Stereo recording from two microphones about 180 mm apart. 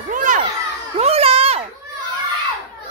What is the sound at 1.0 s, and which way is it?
Speech, 35° right (ahead or behind).